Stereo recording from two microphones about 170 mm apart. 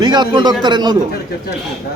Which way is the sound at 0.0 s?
25° right (ahead or behind).